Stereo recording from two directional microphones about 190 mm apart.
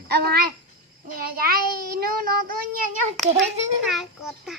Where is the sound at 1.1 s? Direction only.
50° right (ahead or behind).